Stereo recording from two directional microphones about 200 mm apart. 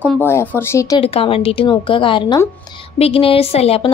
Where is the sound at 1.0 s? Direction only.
30° left (ahead or behind).